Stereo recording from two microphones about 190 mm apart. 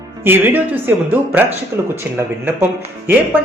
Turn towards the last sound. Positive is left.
turn(degrees=-10)  # may be behind; listen again after turning